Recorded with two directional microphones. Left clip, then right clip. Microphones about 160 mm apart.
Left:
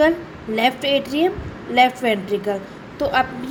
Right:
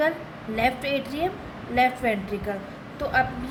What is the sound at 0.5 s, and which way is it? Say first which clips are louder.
A woman's voice: left 6 dB; 25° left (ahead or behind).